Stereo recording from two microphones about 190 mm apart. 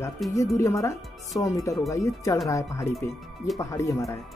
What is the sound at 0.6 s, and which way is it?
Speech, 15° left (ahead or behind).